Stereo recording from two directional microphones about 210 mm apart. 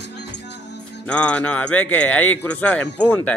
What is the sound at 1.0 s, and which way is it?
Speech, 5° left (ahead or behind).